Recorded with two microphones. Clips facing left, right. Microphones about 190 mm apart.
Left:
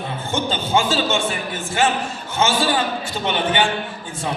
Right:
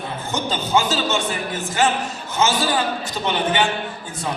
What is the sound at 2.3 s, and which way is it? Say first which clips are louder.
Speech: even; 40° right (ahead or behind).